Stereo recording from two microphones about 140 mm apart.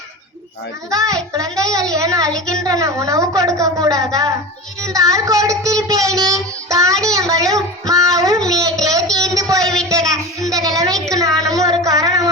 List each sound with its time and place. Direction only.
0.9 s child singing: 25° right (ahead or behind)
1.9 s speech: 25° right (ahead or behind)
2.3 s a woman's voice: 5° left (ahead or behind)
2.6 s speech: 25° right (ahead or behind)
7.9 s child singing: 25° right (ahead or behind)
8.8 s a sound: 25° right (ahead or behind)
9.6 s a sound: 5° left (ahead or behind)
10.0 s child singing: 5° left (ahead or behind)
10.5 s a sound: 25° right (ahead or behind)
11.1 s child singing: 25° right (ahead or behind)